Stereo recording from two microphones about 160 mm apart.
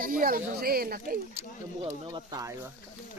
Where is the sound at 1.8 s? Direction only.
35° right (ahead or behind).